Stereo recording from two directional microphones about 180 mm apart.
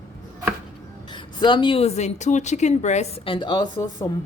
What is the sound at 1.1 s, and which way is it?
Speech, 25° left (ahead or behind).